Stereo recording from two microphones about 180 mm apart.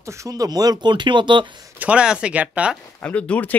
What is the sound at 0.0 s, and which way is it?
Speech, 15° right (ahead or behind).